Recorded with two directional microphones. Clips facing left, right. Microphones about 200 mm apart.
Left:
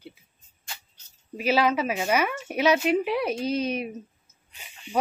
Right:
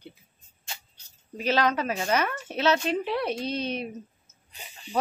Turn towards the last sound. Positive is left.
turn(degrees=-35)  # may be behind; listen again after turning